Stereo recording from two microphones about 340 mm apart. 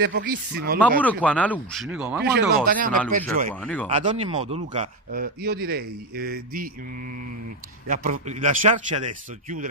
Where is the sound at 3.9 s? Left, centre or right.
Centre.